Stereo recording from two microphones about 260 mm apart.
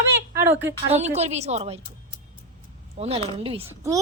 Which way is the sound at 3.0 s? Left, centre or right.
Right.